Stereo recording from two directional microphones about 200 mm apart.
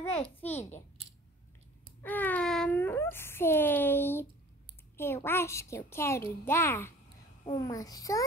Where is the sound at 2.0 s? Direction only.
10° left (ahead or behind).